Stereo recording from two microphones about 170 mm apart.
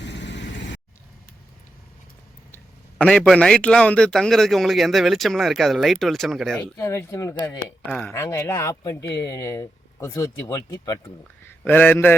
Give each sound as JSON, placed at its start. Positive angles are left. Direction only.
{"t": 0.0, "sound": "vehicle", "side_deg": 90}
{"t": 3.0, "sound": "a man's voice", "side_deg": 5}
{"t": 6.7, "sound": "speech", "side_deg": 20}
{"t": 7.9, "sound": "speech", "side_deg": 5}
{"t": 11.4, "sound": "a man's voice", "side_deg": 10}